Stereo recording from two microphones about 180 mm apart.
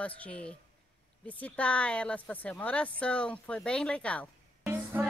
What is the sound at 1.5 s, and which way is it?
Speech, 5° left (ahead or behind).